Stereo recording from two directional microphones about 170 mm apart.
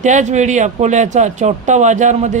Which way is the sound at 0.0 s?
45° right (ahead or behind).